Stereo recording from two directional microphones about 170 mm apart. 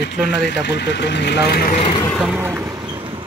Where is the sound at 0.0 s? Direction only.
85° left; by 1.8 s 65° left (ahead or behind).